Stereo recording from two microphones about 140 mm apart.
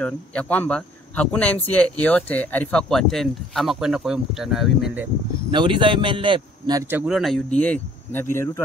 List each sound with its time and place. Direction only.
0.0 s speech: 10° left (ahead or behind)
5.5 s a man's voice: 35° right (ahead or behind)
6.9 s speech: 10° right (ahead or behind); by 8.6 s 20° left (ahead or behind)